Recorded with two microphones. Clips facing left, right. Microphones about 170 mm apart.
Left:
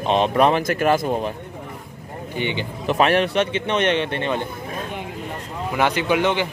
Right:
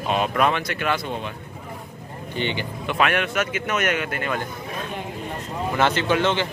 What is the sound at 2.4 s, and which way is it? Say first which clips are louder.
Speech: left 1 dB; 15° left (ahead or behind).